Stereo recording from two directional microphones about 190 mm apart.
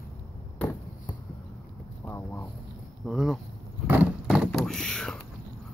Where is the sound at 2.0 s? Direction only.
10° left (ahead or behind).